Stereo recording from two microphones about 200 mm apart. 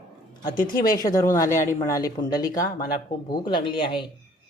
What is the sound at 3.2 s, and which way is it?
Speech, 25° left (ahead or behind).